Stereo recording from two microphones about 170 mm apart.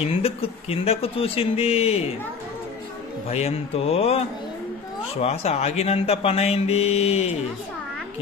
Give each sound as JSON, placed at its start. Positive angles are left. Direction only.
{"t": 0.0, "sound": "speech", "side_deg": 35}
{"t": 3.3, "sound": "speech", "side_deg": 35}
{"t": 5.2, "sound": "speech", "side_deg": 40}